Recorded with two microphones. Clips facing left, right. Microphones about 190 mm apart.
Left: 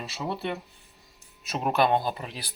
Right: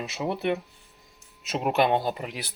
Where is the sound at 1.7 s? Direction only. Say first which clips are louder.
Right 1 dB; 20° right (ahead or behind).